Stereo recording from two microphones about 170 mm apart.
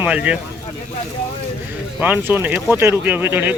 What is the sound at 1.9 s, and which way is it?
Speech, 10° right (ahead or behind).